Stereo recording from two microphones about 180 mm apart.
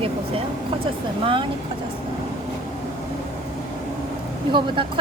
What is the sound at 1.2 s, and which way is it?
Speech, 30° right (ahead or behind).